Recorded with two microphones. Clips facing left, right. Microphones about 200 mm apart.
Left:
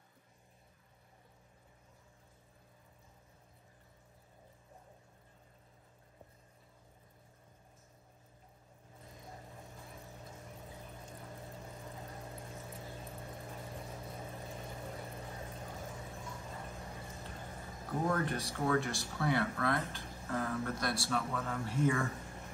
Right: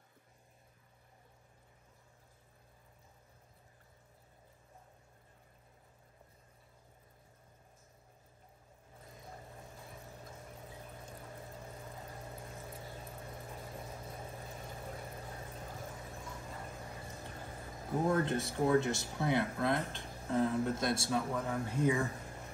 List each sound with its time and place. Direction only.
18.1 s speech: 25° right (ahead or behind)